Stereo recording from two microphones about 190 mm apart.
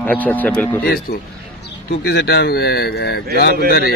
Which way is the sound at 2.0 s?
60° left (ahead or behind).